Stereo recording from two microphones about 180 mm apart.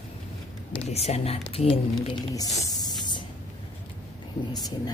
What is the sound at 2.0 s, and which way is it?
Speech, 20° left (ahead or behind).